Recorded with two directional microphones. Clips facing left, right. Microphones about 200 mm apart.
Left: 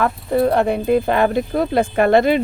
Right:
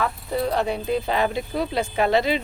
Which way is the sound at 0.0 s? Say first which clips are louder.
Left 7 dB; 55° left (ahead or behind).